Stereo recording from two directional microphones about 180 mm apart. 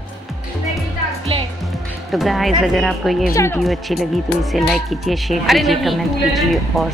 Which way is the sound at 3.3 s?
15° left (ahead or behind).